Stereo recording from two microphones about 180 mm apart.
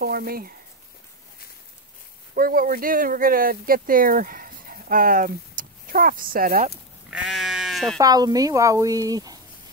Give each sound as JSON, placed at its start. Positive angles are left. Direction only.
{"t": 0.0, "sound": "speech", "side_deg": -55}
{"t": 2.3, "sound": "speech", "side_deg": -55}
{"t": 7.1, "sound": "sheep", "side_deg": -5}
{"t": 8.0, "sound": "speech", "side_deg": -20}